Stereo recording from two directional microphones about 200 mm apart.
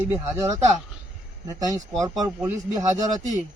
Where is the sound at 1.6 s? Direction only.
15° right (ahead or behind).